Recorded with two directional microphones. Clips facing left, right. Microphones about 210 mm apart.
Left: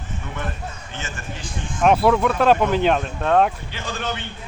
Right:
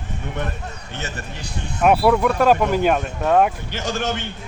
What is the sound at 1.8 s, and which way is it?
Speech, 5° right (ahead or behind).